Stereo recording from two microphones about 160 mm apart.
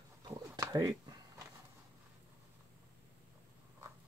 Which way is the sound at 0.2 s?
20° right (ahead or behind).